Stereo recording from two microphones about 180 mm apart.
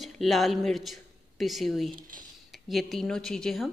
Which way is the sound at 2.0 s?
50° right (ahead or behind).